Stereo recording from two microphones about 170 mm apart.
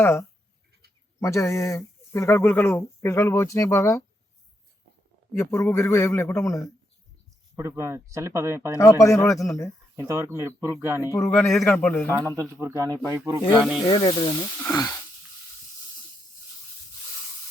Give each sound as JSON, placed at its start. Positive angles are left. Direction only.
{"t": 0.0, "sound": "speech", "side_deg": 15}
{"t": 5.3, "sound": "speech", "side_deg": 15}
{"t": 7.5, "sound": "speech", "side_deg": -15}
{"t": 8.8, "sound": "speech", "side_deg": 20}
{"t": 9.9, "sound": "speech", "side_deg": -15}
{"t": 11.0, "sound": "speech", "side_deg": 15}
{"t": 12.2, "sound": "speech", "side_deg": -15}
{"t": 13.9, "sound": "speech", "side_deg": 25}